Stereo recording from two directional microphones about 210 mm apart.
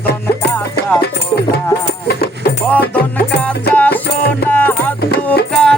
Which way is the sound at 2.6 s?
5° left (ahead or behind).